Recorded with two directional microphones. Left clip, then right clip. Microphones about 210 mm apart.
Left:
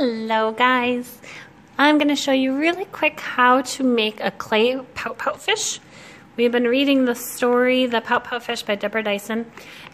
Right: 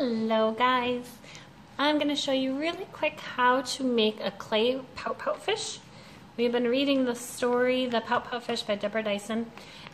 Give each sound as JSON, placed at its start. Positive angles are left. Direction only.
{"t": 0.0, "sound": "a woman's voice", "side_deg": 50}